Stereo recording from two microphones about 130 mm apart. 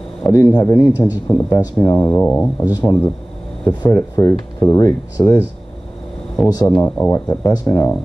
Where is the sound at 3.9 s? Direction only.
25° left (ahead or behind).